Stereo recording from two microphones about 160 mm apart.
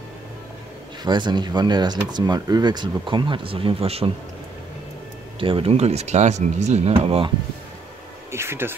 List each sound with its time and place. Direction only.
1.0 s speech: 25° right (ahead or behind)
5.4 s speech: 35° right (ahead or behind)
8.3 s speech: 15° right (ahead or behind)